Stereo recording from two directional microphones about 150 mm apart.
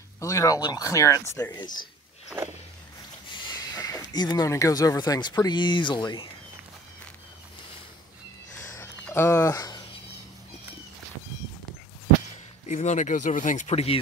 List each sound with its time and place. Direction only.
0.2 s speech: 20° left (ahead or behind)
3.3 s speech: 30° left (ahead or behind)
8.7 s a sound: 15° left (ahead or behind)
12.6 s speech: 55° left (ahead or behind)